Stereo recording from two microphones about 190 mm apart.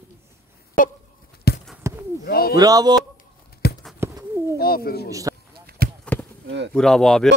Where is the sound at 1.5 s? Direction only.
60° left (ahead or behind).